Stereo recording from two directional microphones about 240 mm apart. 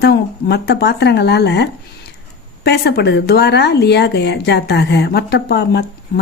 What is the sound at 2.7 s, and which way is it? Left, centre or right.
Speech, left.